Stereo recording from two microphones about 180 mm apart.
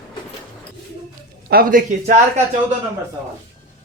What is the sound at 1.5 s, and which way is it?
Speech, 55° right (ahead or behind).